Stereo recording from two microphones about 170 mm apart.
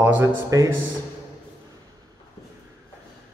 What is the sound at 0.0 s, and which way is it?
Speech, 15° right (ahead or behind).